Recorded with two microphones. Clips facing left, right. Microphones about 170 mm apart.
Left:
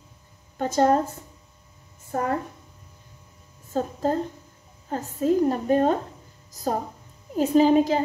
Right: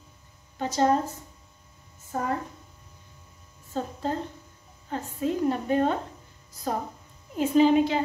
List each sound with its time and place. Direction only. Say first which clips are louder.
0.6 s a woman's voice: left 3 dB; 50° left (ahead or behind)
3.7 s a woman's voice: left 5 dB; 40° left (ahead or behind)